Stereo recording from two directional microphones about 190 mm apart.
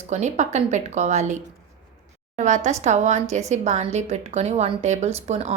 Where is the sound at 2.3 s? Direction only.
40° right (ahead or behind).